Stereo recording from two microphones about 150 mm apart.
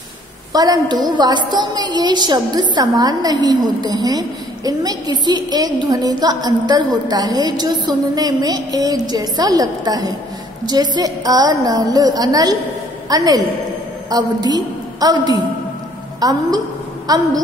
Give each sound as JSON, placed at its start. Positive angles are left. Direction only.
{"t": 0.5, "sound": "a woman's voice", "side_deg": -25}